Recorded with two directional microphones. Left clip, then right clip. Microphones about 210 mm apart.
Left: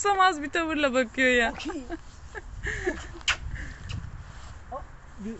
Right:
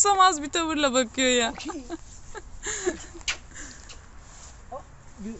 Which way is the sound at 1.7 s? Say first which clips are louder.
Even; 10° right (ahead or behind).